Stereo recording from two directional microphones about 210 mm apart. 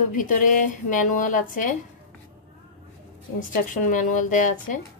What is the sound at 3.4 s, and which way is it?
A woman's voice, 40° left (ahead or behind).